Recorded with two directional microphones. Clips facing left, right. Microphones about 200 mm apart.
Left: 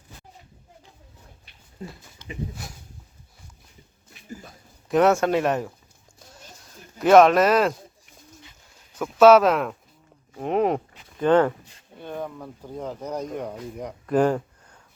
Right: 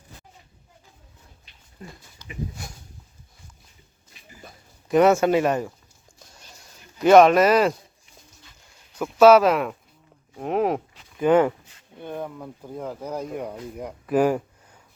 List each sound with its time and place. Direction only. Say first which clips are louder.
1.8 s speech: left 4 dB; 25° left (ahead or behind)
2.6 s a sound: even; centre (ahead or behind)
4.4 s speech: right 1 dB; centre (ahead or behind)
7.0 s speech: right 1 dB; centre (ahead or behind)
10.3 s livestock: left 1 dB; centre (ahead or behind)
11.2 s speech: right 1 dB; 10° right (ahead or behind)
12.0 s a sound: even; 10° right (ahead or behind)
12.6 s speech: even; 5° right (ahead or behind)